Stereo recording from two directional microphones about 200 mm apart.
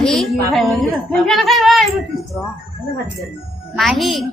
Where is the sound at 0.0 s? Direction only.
Centre (ahead or behind).